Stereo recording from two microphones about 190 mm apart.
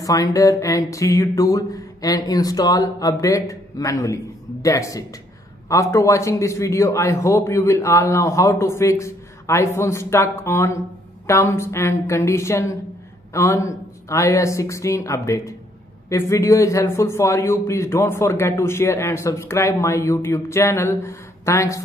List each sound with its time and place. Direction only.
0.0 s a man's voice: 15° left (ahead or behind)